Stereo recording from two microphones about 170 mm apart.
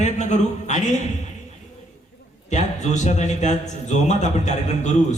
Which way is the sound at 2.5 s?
45° left (ahead or behind).